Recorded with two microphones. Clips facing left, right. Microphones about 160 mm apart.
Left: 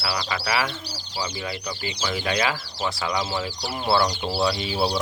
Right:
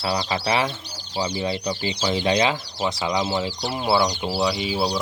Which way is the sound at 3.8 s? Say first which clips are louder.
Right 1 dB; 5° right (ahead or behind).